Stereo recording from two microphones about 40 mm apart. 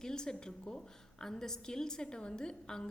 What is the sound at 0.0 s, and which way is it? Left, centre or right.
A woman's voice, centre.